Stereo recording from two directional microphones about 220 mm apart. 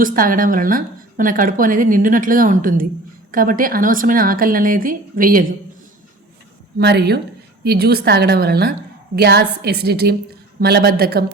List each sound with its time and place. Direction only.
0.0 s a woman's voice: 40° right (ahead or behind)
6.7 s a woman's voice: 45° right (ahead or behind)